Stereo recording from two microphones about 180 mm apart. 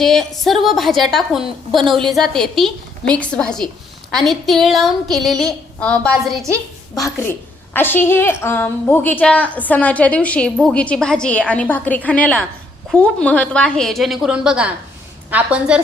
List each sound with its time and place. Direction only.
0.0 s a woman's voice: centre (ahead or behind)
6.9 s a woman's voice: 15° left (ahead or behind); by 15.8 s 5° right (ahead or behind)